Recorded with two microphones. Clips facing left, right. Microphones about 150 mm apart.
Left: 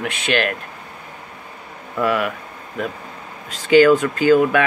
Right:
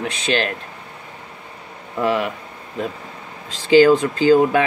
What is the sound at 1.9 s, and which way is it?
Speech, 30° right (ahead or behind).